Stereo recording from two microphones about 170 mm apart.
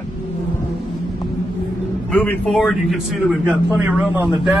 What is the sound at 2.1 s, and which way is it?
Speech, 10° left (ahead or behind).